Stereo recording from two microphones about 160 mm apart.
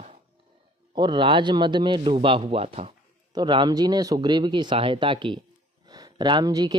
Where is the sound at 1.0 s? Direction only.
30° right (ahead or behind).